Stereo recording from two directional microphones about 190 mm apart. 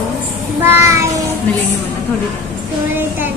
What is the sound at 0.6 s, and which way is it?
Speech, 15° right (ahead or behind).